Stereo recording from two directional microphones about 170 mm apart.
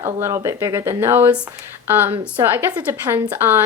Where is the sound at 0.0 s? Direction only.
15° right (ahead or behind).